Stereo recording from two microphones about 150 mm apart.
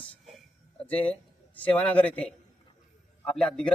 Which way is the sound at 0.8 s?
10° left (ahead or behind).